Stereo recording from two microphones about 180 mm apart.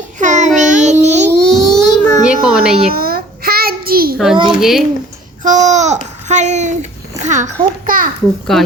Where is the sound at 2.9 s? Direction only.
55° right (ahead or behind).